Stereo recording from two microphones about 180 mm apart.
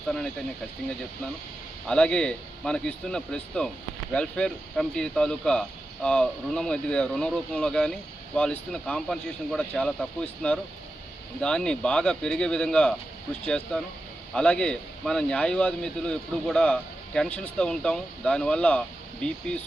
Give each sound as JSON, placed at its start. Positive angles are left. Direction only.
{"t": 1.9, "sound": "a man's voice", "side_deg": 5}